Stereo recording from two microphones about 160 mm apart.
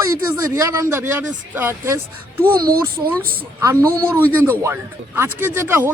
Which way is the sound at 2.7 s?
65° right (ahead or behind).